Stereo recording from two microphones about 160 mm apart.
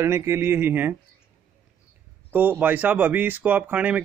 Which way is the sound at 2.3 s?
10° right (ahead or behind).